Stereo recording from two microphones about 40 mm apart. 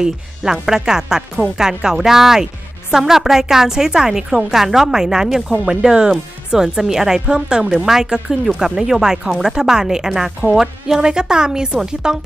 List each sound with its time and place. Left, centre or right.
0.0 s a woman's voice: centre
7.7 s a woman's voice: centre